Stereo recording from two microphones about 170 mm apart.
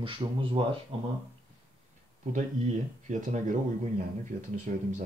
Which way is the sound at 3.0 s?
45° right (ahead or behind).